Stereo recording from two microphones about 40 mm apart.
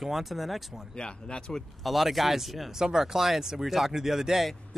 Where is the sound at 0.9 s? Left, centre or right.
Left.